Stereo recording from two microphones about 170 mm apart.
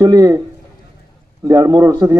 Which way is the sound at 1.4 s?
20° right (ahead or behind).